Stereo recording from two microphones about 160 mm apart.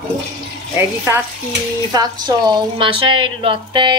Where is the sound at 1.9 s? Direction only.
25° right (ahead or behind).